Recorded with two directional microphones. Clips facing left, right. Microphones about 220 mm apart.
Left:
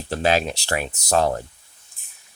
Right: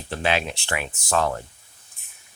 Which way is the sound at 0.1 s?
40° left (ahead or behind).